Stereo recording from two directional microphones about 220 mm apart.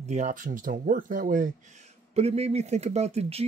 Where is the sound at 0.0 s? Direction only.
30° right (ahead or behind).